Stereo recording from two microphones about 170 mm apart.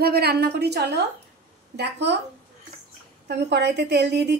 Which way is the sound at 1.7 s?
85° right.